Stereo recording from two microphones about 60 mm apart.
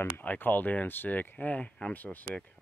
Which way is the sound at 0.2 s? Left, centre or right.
Left.